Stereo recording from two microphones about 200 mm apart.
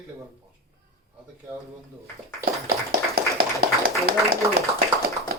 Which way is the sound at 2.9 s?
50° right (ahead or behind).